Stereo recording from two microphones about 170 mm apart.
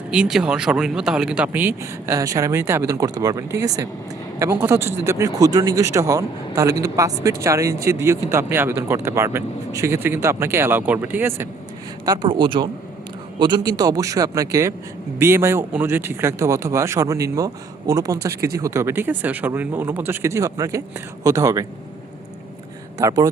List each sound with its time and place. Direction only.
0.1 s speech: 5° right (ahead or behind)
12.0 s a man's voice: 25° right (ahead or behind)
23.0 s a man's voice: 20° right (ahead or behind)